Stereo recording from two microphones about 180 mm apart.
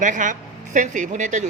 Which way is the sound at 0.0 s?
45° right (ahead or behind).